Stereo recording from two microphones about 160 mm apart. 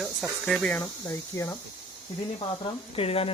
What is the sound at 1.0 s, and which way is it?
Speech, 20° left (ahead or behind).